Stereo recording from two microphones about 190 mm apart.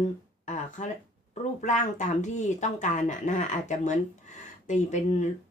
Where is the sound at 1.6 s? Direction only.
40° left (ahead or behind).